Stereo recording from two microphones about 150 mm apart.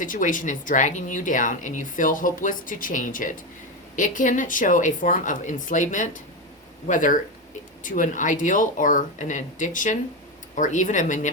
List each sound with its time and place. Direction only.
0.0 s speech: 60° left (ahead or behind)